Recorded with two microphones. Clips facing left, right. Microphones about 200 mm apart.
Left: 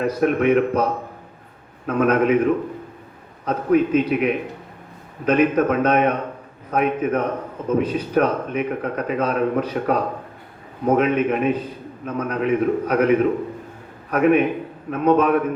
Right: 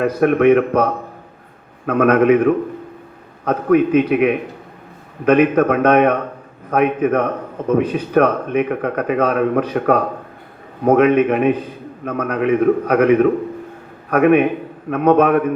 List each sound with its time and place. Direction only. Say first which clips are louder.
0.0 s a man's voice: right 5 dB; 60° right (ahead or behind)
1.9 s a man's voice: right 5 dB; 60° right (ahead or behind)
3.4 s a man's voice: right 4 dB; 60° right (ahead or behind)